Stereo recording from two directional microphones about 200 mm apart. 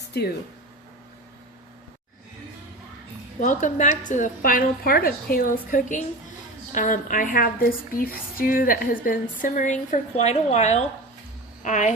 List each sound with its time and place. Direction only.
0.1 s speech: 55° left (ahead or behind)
3.4 s speech: 40° left (ahead or behind)